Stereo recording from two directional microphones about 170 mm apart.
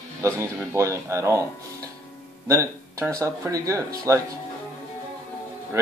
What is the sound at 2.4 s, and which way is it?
Speech, 15° right (ahead or behind).